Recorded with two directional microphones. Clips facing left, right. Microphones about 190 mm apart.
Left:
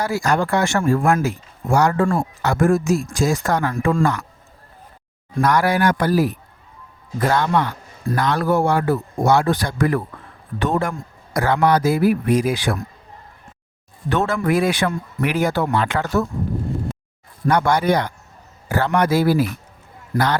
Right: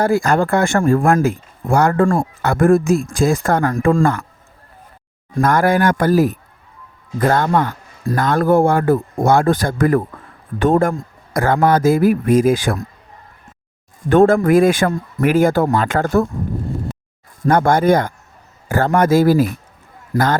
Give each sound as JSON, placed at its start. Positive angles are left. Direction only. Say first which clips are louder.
{"t": 0.0, "sound": "speech", "louder": "right 5 dB", "side_deg": -55}
{"t": 5.4, "sound": "speech", "louder": "right 3 dB", "side_deg": -50}
{"t": 14.1, "sound": "speech", "louder": "right 8 dB", "side_deg": -50}
{"t": 17.5, "sound": "speech", "louder": "right 4 dB", "side_deg": -50}